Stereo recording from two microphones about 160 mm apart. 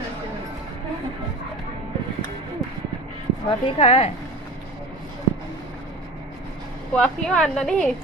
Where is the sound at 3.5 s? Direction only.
35° left (ahead or behind).